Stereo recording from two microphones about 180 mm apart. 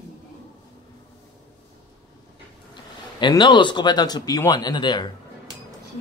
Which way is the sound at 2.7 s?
25° left (ahead or behind).